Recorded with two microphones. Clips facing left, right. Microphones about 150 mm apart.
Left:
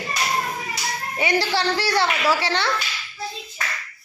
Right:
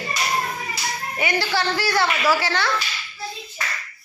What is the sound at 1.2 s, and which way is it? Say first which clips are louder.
A woman's voice: left 2 dB; 30° left (ahead or behind).